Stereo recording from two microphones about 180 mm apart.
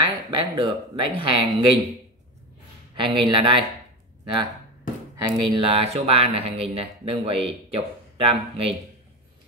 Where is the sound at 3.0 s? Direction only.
25° right (ahead or behind).